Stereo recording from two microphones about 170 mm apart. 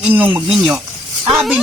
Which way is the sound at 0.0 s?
10° right (ahead or behind).